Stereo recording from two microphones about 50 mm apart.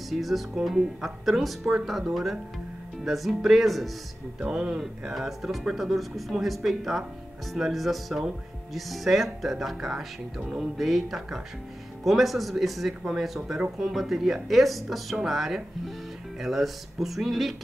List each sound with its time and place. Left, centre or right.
0.1 s speech: centre
4.4 s speech: centre
5.1 s speech: centre